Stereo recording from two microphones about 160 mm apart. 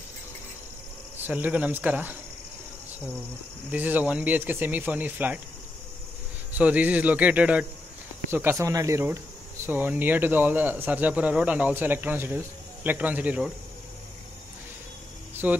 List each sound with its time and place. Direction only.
1.2 s speech: 10° right (ahead or behind)
3.7 s speech: 10° right (ahead or behind)
6.5 s speech: 10° right (ahead or behind)
15.4 s speech: 10° right (ahead or behind)